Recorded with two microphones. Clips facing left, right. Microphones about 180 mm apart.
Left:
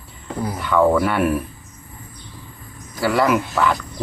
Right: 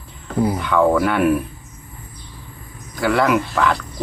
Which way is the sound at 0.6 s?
Centre (ahead or behind).